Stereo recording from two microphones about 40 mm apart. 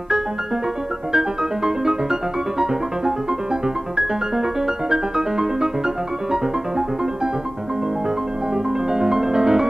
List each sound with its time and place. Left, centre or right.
1.1 s music: centre
3.6 s music: centre
8.9 s music: centre